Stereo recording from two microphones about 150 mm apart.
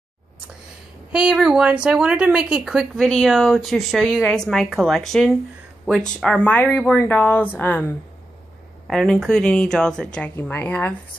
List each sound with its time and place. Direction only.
1.1 s speech: 5° right (ahead or behind); by 7.8 s 10° left (ahead or behind)
8.8 s speech: centre (ahead or behind)